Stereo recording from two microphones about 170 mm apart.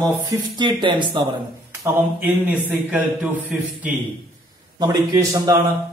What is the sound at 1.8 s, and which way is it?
Speech, 15° right (ahead or behind).